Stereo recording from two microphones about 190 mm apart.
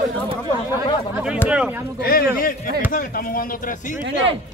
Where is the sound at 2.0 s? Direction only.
50° left (ahead or behind).